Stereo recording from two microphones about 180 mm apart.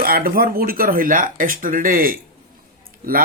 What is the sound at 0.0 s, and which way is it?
Speech, 55° right (ahead or behind).